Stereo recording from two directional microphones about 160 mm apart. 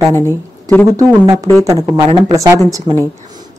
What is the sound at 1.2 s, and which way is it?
Speech, 20° right (ahead or behind).